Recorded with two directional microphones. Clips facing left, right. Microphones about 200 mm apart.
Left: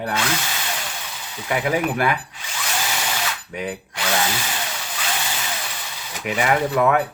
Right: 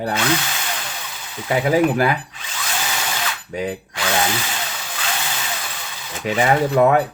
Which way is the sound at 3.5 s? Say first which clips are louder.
Right 5 dB; 25° right (ahead or behind).